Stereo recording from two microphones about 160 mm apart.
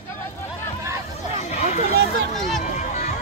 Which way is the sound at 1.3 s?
45° left (ahead or behind).